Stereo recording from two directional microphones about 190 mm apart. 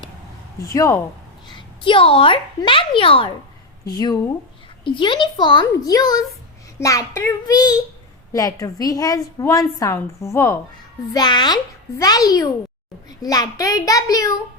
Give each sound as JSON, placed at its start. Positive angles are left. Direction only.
{"t": 0.7, "sound": "a woman's voice", "side_deg": 15}